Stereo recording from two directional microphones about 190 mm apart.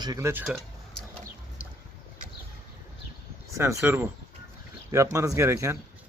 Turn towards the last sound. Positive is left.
turn(degrees=-15)  # may be behind; listen again after turning